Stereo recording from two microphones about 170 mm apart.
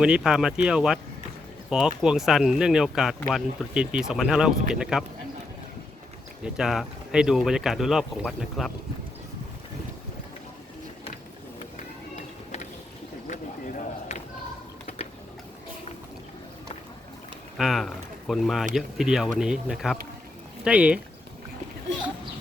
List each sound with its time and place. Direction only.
0.0 s speech: 5° right (ahead or behind)
2.0 s speech: 5° right (ahead or behind)
6.4 s speech: centre (ahead or behind)
13.2 s a sound: 45° left (ahead or behind)
17.6 s speech: centre (ahead or behind)